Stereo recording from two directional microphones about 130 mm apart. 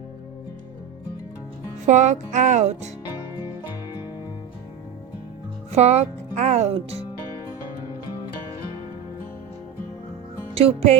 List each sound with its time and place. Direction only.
1.9 s speech: 65° right (ahead or behind)
5.7 s speech: 55° right (ahead or behind)
10.5 s music: 50° right (ahead or behind)